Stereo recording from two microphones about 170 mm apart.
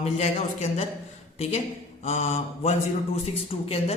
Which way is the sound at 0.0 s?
40° left (ahead or behind).